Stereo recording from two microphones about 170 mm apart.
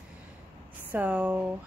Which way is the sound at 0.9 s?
5° right (ahead or behind).